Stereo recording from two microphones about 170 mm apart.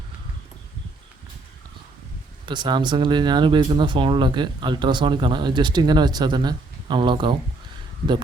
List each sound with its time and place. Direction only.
2.5 s speech: 25° right (ahead or behind)